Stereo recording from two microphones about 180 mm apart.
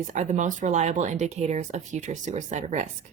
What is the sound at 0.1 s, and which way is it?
Speech, 45° right (ahead or behind).